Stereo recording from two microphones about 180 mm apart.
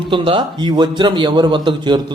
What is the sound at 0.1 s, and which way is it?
A man's voice, 25° right (ahead or behind).